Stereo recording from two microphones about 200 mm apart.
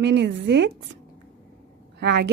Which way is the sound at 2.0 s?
60° right (ahead or behind).